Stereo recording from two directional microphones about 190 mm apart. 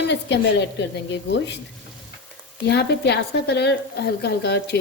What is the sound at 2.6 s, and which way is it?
A woman's voice, 60° left (ahead or behind).